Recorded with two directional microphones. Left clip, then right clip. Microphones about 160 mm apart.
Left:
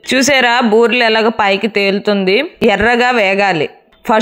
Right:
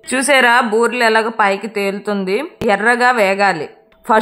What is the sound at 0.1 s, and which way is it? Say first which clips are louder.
Speech: left 1 dB; 30° left (ahead or behind).